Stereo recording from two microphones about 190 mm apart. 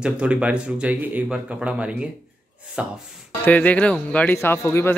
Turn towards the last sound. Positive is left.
turn(degrees=15)  # may be behind; listen again after turning